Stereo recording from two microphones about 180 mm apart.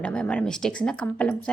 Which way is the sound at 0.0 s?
5° left (ahead or behind).